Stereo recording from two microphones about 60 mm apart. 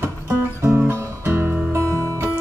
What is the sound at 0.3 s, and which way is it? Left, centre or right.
Music, right.